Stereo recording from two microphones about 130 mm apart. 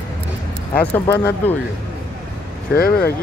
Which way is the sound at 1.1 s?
15° left (ahead or behind).